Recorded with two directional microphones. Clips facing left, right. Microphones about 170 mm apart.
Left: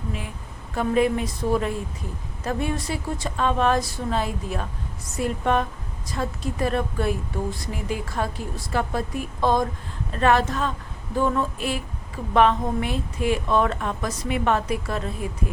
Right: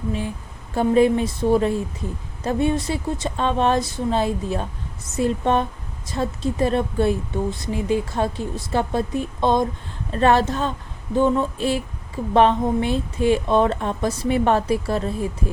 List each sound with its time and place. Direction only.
0.8 s speech: 30° right (ahead or behind)